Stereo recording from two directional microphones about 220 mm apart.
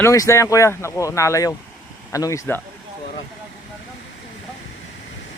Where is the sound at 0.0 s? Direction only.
15° left (ahead or behind).